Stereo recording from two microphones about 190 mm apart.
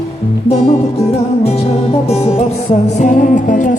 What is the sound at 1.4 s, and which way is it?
Music, 35° left (ahead or behind).